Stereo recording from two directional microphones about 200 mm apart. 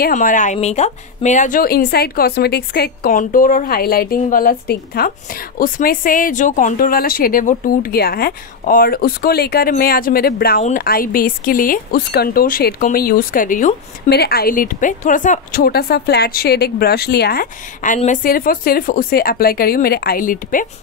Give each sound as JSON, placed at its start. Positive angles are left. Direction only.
{"t": 0.0, "sound": "a woman's voice", "side_deg": 40}
{"t": 14.1, "sound": "a woman's voice", "side_deg": 50}